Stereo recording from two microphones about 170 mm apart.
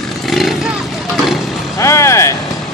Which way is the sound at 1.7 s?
15° left (ahead or behind).